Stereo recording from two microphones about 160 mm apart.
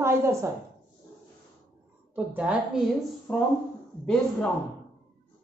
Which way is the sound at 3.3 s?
10° left (ahead or behind).